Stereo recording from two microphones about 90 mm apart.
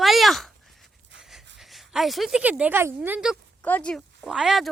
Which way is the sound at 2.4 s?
15° right (ahead or behind).